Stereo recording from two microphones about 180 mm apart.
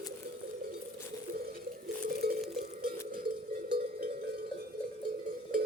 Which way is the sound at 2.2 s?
60° right (ahead or behind).